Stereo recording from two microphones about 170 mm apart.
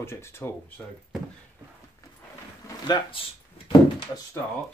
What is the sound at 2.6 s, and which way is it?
Speech, 25° left (ahead or behind).